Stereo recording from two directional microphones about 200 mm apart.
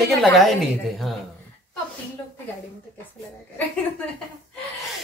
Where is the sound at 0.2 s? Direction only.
Centre (ahead or behind).